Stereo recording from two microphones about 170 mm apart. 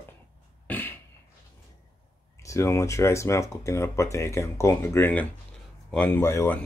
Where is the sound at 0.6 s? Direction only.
10° left (ahead or behind).